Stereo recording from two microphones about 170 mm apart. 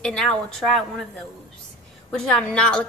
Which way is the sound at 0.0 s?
5° left (ahead or behind).